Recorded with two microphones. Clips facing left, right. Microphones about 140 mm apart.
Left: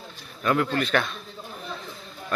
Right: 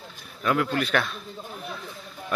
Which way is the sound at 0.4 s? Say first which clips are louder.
Left 1 dB; 5° right (ahead or behind).